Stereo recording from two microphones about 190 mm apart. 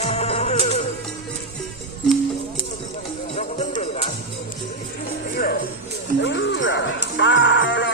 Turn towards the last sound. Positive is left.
turn(degrees=70)  # may be behind; listen again after turning